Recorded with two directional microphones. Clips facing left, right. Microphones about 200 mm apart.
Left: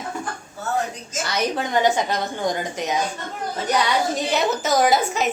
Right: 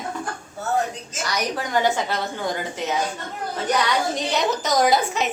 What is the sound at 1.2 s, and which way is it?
A woman's voice, 25° left (ahead or behind).